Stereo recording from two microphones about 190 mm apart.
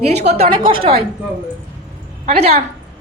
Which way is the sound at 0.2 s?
35° right (ahead or behind).